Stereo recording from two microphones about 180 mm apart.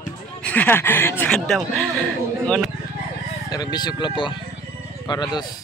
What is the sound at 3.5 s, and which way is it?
Speech, 20° left (ahead or behind).